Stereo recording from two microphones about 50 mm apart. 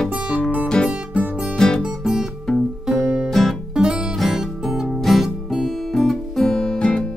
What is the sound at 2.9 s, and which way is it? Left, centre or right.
Music, centre.